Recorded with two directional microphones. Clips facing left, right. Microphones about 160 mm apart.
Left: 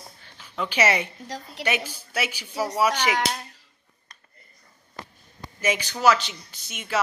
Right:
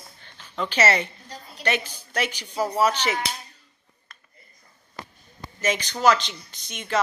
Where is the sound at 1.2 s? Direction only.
90° left.